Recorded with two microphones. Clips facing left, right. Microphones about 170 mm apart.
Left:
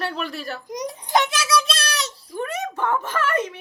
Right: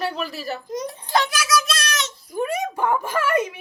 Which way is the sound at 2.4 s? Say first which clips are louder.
Right 3 dB; 10° right (ahead or behind).